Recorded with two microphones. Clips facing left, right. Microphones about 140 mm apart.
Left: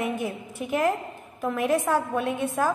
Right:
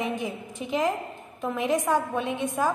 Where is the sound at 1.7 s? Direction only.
15° right (ahead or behind).